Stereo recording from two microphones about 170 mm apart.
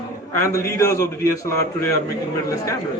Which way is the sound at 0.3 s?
15° left (ahead or behind).